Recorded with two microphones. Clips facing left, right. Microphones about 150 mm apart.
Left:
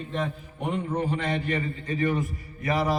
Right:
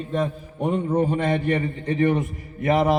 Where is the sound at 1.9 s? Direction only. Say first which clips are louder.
Right 6 dB; 30° right (ahead or behind).